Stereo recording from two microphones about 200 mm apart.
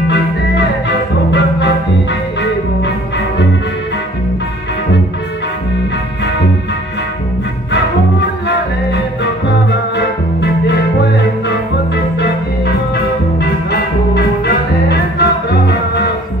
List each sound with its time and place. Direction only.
0.1 s music: 60° left (ahead or behind)
7.7 s music: 60° left (ahead or behind)